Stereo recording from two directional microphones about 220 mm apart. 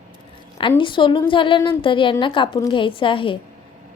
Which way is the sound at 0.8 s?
20° left (ahead or behind).